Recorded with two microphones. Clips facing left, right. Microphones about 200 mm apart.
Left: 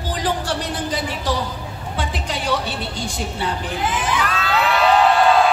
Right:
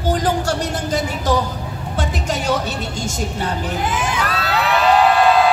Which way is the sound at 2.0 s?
45° right (ahead or behind).